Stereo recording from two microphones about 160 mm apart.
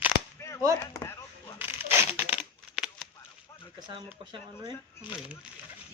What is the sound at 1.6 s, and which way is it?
Crushing, 15° right (ahead or behind).